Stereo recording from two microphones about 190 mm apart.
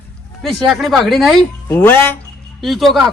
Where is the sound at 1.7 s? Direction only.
10° left (ahead or behind).